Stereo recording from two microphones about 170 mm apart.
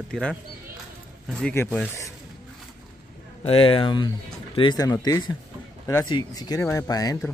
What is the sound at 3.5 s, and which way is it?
Speech, 35° left (ahead or behind).